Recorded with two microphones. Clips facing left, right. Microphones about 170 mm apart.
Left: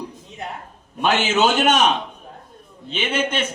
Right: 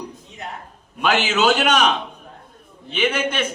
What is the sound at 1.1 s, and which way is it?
Speech, 20° left (ahead or behind).